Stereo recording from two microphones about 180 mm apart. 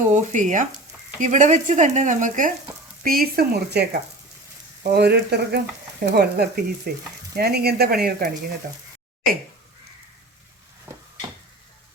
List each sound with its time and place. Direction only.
0.0 s speech: 45° right (ahead or behind); by 3.8 s 60° right (ahead or behind)
4.9 s speech: 65° right (ahead or behind)
10.9 s a sound: 10° right (ahead or behind)